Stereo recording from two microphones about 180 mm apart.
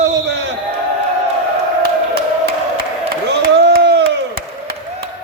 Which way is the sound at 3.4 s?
60° right (ahead or behind).